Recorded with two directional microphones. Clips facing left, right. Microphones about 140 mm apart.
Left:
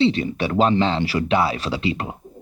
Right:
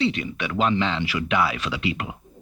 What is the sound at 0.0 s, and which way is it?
Speech, 30° left (ahead or behind).